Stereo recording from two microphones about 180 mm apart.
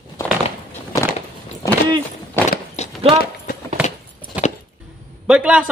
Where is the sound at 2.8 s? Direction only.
40° left (ahead or behind).